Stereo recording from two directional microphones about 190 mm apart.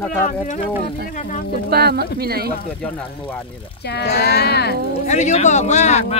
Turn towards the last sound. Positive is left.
turn(degrees=40)  # may be behind; listen again after turning